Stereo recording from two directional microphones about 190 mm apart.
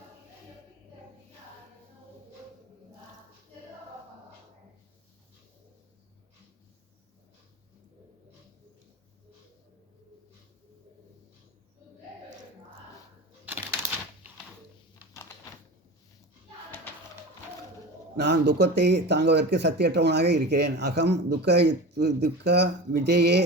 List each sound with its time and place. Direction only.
18.2 s speech: 60° right (ahead or behind)